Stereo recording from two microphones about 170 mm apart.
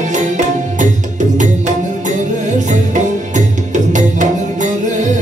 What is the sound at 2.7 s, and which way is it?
Music, 45° right (ahead or behind).